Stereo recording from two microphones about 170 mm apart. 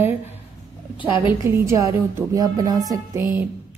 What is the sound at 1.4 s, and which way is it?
A woman's voice, 15° right (ahead or behind).